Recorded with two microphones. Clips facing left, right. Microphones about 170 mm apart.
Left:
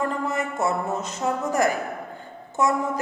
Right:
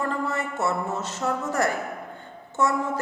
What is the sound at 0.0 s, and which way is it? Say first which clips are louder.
A woman's voice: left 2 dB; 20° left (ahead or behind).